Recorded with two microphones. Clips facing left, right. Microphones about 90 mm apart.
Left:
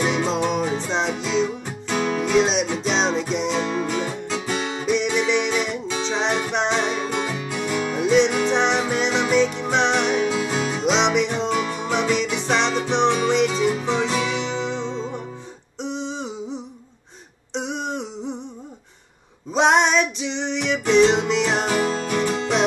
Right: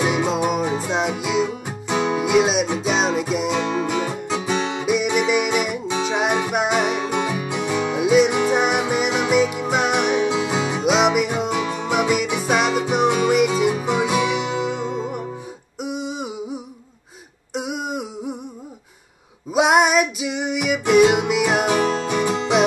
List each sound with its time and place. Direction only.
0.0 s music: 10° right (ahead or behind)
4.4 s guitar: 20° right (ahead or behind)
4.8 s music: 10° right (ahead or behind)
15.8 s a sound: 10° right (ahead or behind)
17.6 s a sound: 10° right (ahead or behind)
19.5 s music: 10° right (ahead or behind)